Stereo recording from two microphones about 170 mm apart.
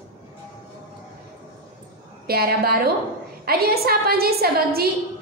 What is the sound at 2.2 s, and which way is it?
A woman's voice, 65° right (ahead or behind).